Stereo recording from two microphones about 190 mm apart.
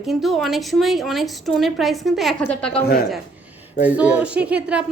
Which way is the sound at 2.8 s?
55° left (ahead or behind).